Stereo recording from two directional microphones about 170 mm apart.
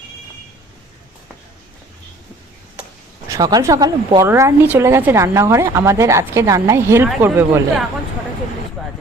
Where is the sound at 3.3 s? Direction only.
20° right (ahead or behind).